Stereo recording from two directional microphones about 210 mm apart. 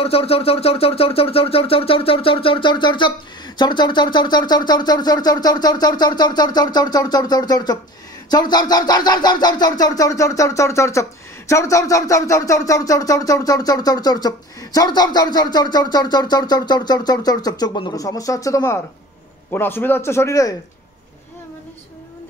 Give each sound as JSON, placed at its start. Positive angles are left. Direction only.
{"t": 0.0, "sound": "speech", "side_deg": 30}